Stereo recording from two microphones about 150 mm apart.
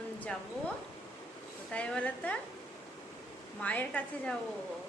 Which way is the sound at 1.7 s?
10° left (ahead or behind).